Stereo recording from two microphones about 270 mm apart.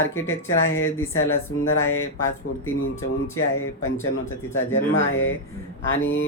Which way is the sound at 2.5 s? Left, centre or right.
Left.